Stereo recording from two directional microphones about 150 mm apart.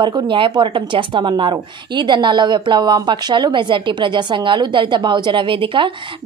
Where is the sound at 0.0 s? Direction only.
30° right (ahead or behind).